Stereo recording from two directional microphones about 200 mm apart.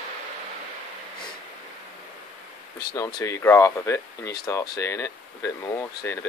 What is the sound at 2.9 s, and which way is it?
Speech, 20° left (ahead or behind).